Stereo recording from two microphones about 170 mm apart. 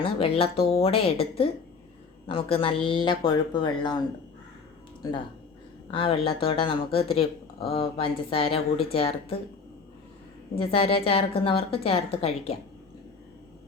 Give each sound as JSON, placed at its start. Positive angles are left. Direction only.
{"t": 0.0, "sound": "speech", "side_deg": 35}
{"t": 5.9, "sound": "speech", "side_deg": 30}
{"t": 10.6, "sound": "speech", "side_deg": 35}